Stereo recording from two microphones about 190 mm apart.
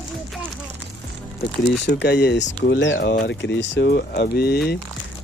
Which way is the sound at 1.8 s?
65° left (ahead or behind).